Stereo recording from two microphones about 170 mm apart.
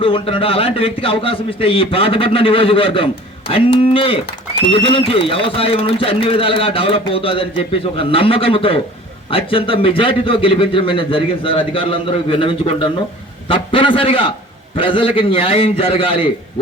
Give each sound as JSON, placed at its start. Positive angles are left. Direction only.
{"t": 0.0, "sound": "a man's voice", "side_deg": 30}